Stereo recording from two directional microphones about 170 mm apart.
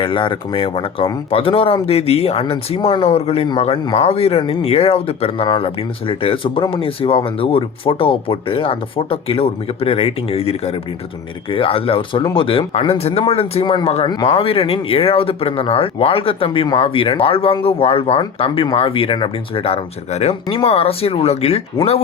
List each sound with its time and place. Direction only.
0.0 s speech: 30° left (ahead or behind)